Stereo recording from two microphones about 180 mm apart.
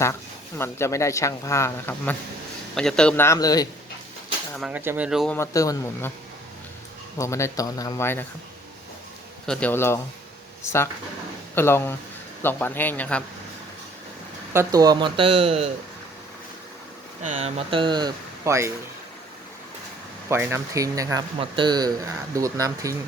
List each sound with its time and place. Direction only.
0.6 s speech: 15° left (ahead or behind)
4.7 s speech: 10° right (ahead or behind)
5.3 s speech: 15° left (ahead or behind)
7.2 s speech: 15° left (ahead or behind)
9.5 s speech: 10° left (ahead or behind)
14.5 s speech: 20° right (ahead or behind); by 15.7 s 35° right (ahead or behind)
17.3 s speech: 30° right (ahead or behind); by 18.7 s 15° right (ahead or behind)
20.3 s speech: 15° right (ahead or behind)